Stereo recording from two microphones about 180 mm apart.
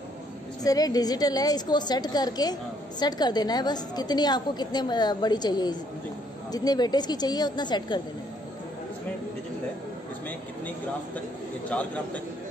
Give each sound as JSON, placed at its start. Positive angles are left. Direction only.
{"t": 0.7, "sound": "a woman's voice", "side_deg": 20}
{"t": 11.7, "sound": "a man's voice", "side_deg": 5}